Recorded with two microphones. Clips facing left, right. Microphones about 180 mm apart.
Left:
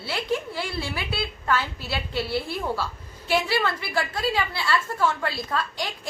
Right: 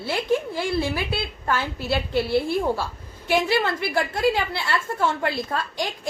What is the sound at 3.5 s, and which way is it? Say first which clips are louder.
A woman's voice: right 3 dB; 20° right (ahead or behind).